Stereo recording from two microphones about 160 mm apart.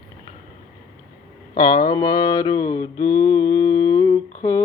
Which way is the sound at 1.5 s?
25° left (ahead or behind).